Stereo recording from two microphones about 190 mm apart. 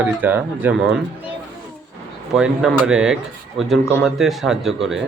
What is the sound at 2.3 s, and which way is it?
Speech, 5° right (ahead or behind).